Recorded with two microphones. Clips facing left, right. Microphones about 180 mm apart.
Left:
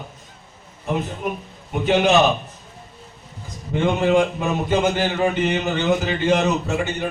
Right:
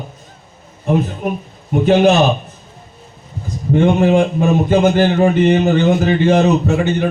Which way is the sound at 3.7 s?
45° right (ahead or behind).